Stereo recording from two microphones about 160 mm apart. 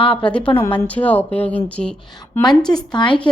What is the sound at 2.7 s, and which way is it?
Speech, 25° left (ahead or behind).